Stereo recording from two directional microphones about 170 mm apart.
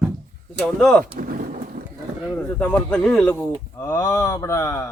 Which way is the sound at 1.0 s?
60° right (ahead or behind).